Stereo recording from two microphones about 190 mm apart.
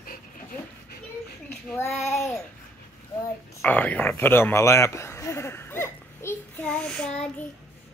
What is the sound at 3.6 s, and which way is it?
Speech, 10° left (ahead or behind).